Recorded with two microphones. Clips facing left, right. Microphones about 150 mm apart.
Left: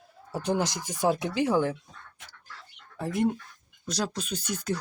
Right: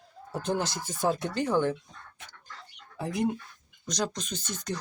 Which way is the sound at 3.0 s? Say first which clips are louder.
Left 2 dB; centre (ahead or behind).